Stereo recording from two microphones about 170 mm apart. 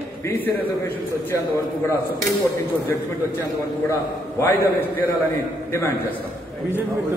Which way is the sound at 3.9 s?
15° left (ahead or behind).